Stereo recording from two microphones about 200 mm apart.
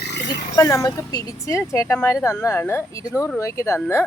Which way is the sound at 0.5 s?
15° left (ahead or behind).